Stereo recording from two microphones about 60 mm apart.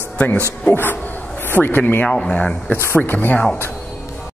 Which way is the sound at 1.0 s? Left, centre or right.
Left.